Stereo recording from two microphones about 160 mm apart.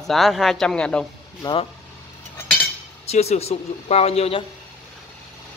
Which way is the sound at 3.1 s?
40° left (ahead or behind).